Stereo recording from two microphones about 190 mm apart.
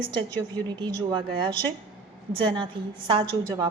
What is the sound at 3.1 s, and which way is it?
Speech, 25° right (ahead or behind).